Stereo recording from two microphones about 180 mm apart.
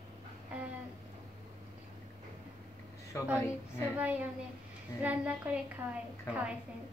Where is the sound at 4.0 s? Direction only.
10° right (ahead or behind).